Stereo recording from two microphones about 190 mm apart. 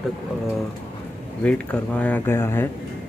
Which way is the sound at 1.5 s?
5° left (ahead or behind).